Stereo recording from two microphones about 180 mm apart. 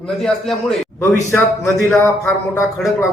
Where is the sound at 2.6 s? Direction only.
Centre (ahead or behind).